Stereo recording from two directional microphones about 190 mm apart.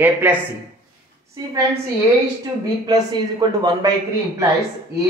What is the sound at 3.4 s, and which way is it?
Speech, 20° right (ahead or behind).